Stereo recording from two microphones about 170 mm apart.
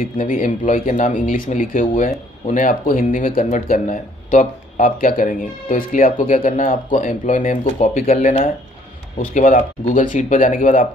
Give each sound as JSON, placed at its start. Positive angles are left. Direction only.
{"t": 0.0, "sound": "speech", "side_deg": 50}